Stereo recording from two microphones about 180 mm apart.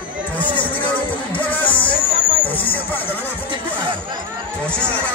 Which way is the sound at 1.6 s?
30° left (ahead or behind).